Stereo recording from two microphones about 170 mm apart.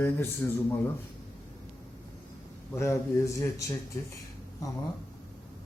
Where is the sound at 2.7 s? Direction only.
15° left (ahead or behind).